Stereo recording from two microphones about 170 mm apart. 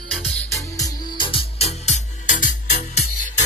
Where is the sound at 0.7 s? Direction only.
25° left (ahead or behind); by 2.5 s 50° left (ahead or behind).